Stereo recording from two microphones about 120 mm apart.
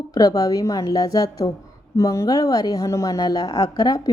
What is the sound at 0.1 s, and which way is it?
Speech, 30° left (ahead or behind).